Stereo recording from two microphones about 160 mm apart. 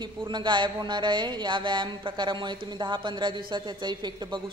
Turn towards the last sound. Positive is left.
turn(degrees=-25)  # may be behind; listen again after turning